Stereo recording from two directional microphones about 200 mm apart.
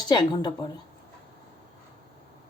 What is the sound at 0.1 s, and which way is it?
Speech, 20° left (ahead or behind).